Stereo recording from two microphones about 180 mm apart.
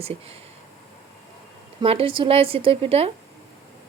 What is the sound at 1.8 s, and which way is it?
A woman's voice, 30° right (ahead or behind).